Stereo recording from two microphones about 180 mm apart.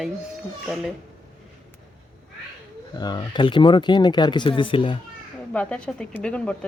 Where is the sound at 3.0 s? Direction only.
25° left (ahead or behind).